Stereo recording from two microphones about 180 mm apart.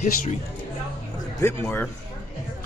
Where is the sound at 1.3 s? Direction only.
15° left (ahead or behind).